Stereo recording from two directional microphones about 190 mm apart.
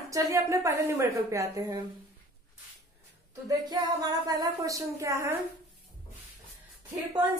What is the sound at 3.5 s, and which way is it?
A woman's voice, 20° right (ahead or behind).